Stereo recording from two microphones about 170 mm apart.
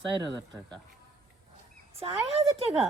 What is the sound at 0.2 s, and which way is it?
Speech, 25° right (ahead or behind).